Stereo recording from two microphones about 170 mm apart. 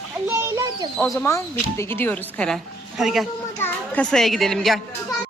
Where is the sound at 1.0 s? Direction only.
10° left (ahead or behind).